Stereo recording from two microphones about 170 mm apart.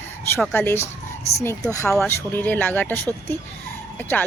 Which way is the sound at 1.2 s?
40° left (ahead or behind).